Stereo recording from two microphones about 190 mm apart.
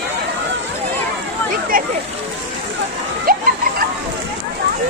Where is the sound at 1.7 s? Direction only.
50° right (ahead or behind).